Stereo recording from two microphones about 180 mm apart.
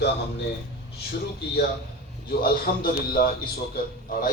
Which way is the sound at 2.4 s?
55° left (ahead or behind).